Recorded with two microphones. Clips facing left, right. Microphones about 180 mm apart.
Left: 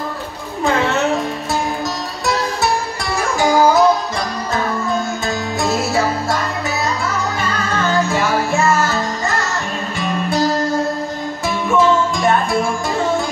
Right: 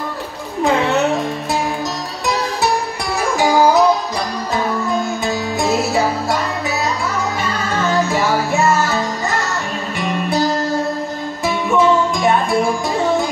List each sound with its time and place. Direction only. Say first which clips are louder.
0.7 s music: right 1 dB; centre (ahead or behind)
3.3 s music: even; centre (ahead or behind)
5.6 s music: right 2 dB; centre (ahead or behind)
7.7 s music: right 1 dB; centre (ahead or behind)